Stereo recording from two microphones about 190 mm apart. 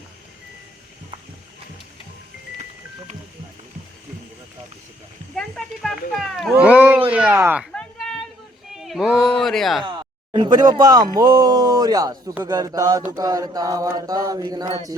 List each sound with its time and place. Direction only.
5.3 s a sound: centre (ahead or behind)
6.5 s cat: 10° right (ahead or behind)
7.1 s speech: 5° right (ahead or behind)
7.6 s a sound: centre (ahead or behind)
8.7 s speech: centre (ahead or behind)
9.8 s speech: 25° right (ahead or behind)
12.5 s mantra: 20° right (ahead or behind)